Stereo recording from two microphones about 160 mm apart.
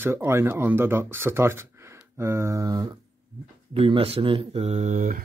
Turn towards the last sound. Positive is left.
turn(degrees=-55)  # may be behind; listen again after turning